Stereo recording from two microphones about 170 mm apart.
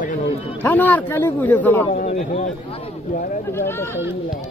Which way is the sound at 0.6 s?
10° left (ahead or behind).